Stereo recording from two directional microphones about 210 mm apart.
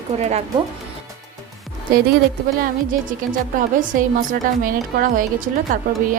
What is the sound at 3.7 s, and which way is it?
A woman's voice, 40° right (ahead or behind).